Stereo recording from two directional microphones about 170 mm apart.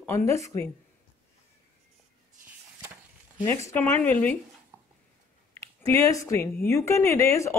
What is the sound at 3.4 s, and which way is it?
Speech, 15° left (ahead or behind).